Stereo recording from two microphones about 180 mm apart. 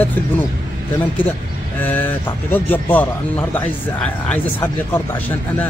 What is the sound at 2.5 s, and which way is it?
A man's voice, 10° left (ahead or behind).